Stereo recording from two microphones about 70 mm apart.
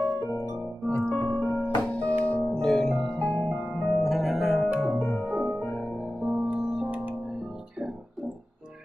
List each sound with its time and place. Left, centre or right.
0.8 s piano: left
2.2 s music: centre
2.6 s music: centre
3.9 s music: centre